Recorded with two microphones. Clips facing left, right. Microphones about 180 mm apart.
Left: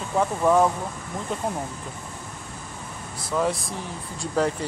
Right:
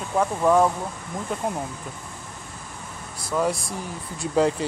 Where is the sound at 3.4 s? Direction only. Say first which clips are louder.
Right 1 dB; centre (ahead or behind).